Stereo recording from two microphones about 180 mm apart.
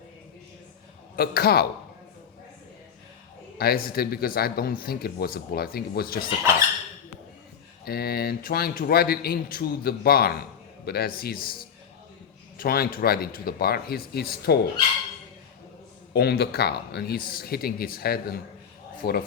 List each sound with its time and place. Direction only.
1.1 s speech: 60° left (ahead or behind)
3.6 s speech: 55° left (ahead or behind)
7.9 s speech: 60° left (ahead or behind)
12.5 s speech: 55° left (ahead or behind)
16.1 s speech: 60° left (ahead or behind)